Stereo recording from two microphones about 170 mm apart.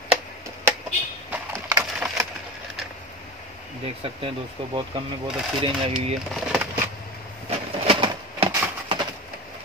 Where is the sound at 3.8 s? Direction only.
35° right (ahead or behind).